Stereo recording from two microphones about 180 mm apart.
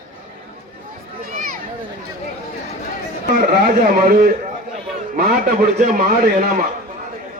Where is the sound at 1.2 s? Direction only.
50° right (ahead or behind).